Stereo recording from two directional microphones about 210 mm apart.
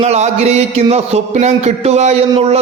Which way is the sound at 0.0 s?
30° right (ahead or behind).